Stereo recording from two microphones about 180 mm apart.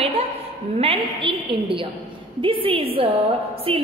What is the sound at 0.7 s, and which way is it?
A woman's voice, 30° right (ahead or behind).